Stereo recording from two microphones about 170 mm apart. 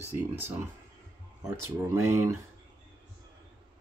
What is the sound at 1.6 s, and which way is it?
Speech, 15° right (ahead or behind).